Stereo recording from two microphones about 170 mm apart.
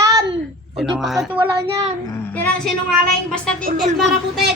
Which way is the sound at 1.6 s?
30° right (ahead or behind).